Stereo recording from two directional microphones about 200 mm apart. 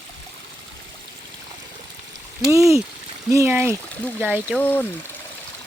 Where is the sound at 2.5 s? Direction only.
15° right (ahead or behind).